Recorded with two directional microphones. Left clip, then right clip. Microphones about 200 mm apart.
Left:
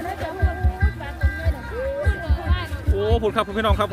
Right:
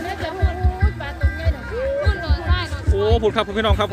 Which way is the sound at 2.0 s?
25° right (ahead or behind).